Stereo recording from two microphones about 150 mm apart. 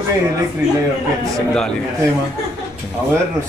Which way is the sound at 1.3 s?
5° left (ahead or behind).